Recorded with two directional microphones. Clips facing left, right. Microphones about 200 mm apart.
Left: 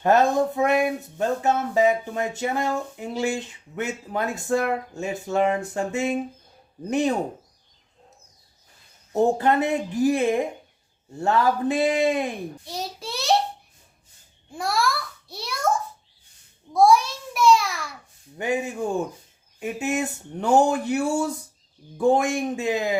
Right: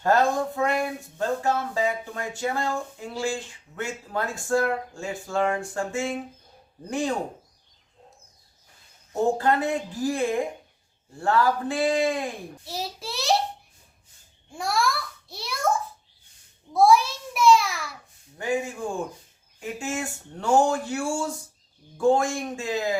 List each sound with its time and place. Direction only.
0.0 s speech: 20° left (ahead or behind)
9.4 s speech: 20° left (ahead or behind)
12.6 s a child's voice: centre (ahead or behind)
14.5 s a sound: centre (ahead or behind)
16.7 s a sound: centre (ahead or behind)
18.3 s speech: 20° left (ahead or behind)